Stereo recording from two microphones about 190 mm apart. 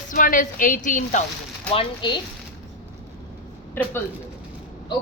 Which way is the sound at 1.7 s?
30° left (ahead or behind).